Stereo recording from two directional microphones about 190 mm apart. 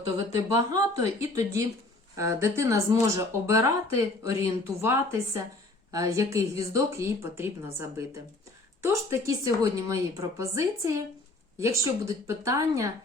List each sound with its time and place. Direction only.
0.3 s a woman's voice: 15° right (ahead or behind)